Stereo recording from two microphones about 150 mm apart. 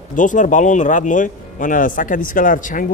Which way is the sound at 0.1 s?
60° left (ahead or behind).